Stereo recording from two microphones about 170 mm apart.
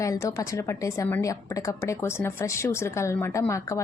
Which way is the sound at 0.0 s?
20° left (ahead or behind).